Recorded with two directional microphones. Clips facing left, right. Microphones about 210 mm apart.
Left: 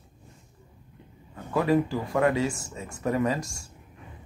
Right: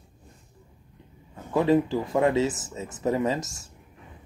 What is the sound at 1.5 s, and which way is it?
Speech, 25° right (ahead or behind).